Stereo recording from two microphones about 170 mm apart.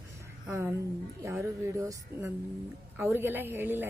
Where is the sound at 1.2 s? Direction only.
15° right (ahead or behind).